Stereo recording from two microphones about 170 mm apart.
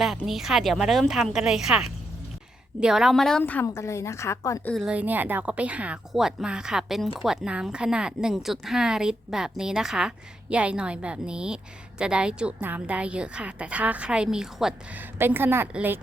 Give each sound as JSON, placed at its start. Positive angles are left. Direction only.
{"t": 0.3, "sound": "a woman's voice", "side_deg": 0}
{"t": 4.7, "sound": "a woman's voice", "side_deg": 0}